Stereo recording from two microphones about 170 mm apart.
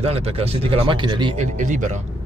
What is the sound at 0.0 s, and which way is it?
Speech, 35° right (ahead or behind).